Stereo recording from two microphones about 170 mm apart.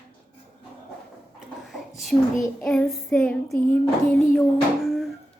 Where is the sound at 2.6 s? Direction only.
5° left (ahead or behind).